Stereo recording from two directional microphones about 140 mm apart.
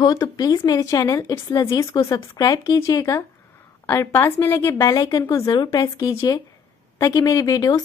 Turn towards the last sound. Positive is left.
turn(degrees=25)  # may be behind; listen again after turning